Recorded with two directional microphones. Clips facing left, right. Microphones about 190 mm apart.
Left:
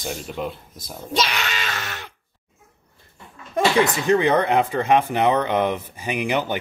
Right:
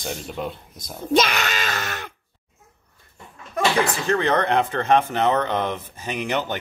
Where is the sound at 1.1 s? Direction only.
50° right (ahead or behind).